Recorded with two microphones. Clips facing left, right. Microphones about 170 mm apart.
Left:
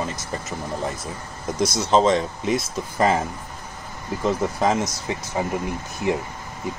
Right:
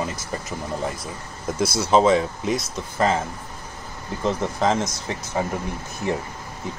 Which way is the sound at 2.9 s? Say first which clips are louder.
Left 1 dB; 15° left (ahead or behind).